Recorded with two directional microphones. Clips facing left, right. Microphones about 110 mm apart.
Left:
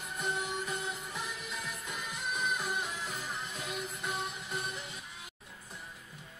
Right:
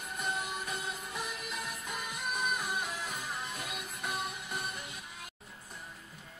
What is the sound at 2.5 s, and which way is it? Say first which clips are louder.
Music: even; 5° right (ahead or behind).